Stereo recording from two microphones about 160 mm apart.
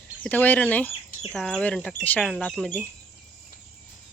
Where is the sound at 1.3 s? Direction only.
5° left (ahead or behind).